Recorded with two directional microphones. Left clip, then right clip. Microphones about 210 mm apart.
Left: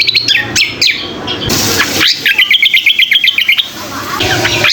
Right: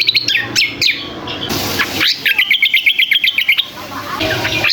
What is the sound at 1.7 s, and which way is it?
Bird, centre (ahead or behind).